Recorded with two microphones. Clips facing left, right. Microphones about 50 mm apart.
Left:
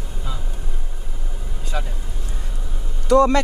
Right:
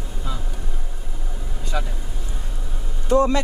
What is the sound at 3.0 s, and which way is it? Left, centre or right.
Speech, left.